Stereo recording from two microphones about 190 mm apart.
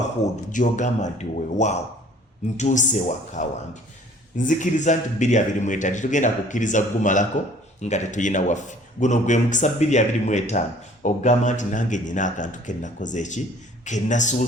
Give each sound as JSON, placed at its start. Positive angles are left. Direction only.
{"t": 0.2, "sound": "a man's voice", "side_deg": 40}